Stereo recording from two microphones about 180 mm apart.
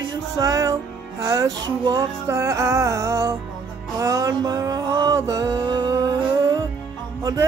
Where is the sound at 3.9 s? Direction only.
20° right (ahead or behind).